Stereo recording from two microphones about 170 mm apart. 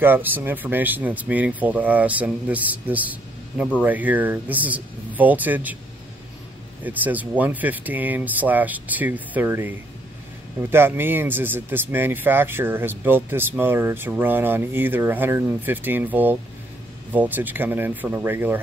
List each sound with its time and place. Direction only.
0.0 s speech: 10° right (ahead or behind)
6.8 s speech: 10° right (ahead or behind)